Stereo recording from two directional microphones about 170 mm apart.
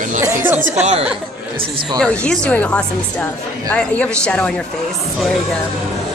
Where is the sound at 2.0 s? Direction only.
5° left (ahead or behind).